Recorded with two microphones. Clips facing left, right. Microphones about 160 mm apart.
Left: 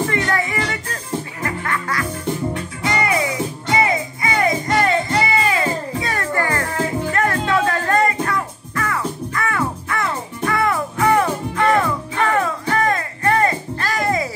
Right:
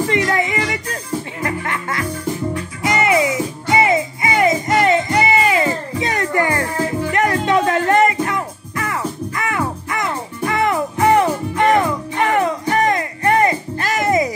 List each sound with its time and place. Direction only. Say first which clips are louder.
0.1 s music: right 3 dB; 20° right (ahead or behind)